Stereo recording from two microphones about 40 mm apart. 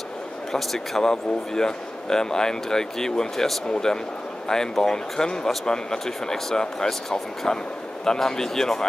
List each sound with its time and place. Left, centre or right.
0.5 s speech: centre